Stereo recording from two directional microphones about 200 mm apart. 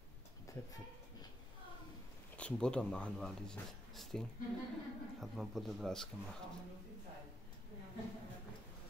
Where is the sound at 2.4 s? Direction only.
5° left (ahead or behind).